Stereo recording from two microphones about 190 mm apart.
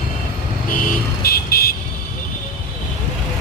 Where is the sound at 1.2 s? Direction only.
55° left (ahead or behind).